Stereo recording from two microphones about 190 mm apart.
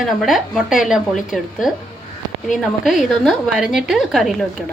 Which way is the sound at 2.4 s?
Centre (ahead or behind).